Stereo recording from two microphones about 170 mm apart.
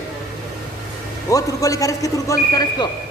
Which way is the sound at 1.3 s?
20° left (ahead or behind).